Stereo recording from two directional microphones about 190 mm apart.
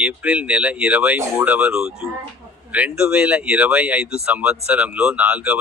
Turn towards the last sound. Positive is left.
turn(degrees=-10)  # may be behind; listen again after turning